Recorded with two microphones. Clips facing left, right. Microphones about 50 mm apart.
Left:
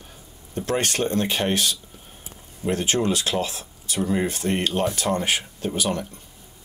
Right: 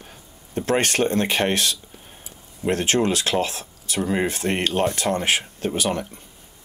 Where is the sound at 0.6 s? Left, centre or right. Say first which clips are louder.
Right 3 dB; right.